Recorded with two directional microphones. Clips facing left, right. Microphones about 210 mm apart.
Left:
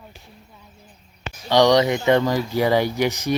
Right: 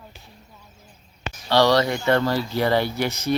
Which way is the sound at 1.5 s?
20° left (ahead or behind).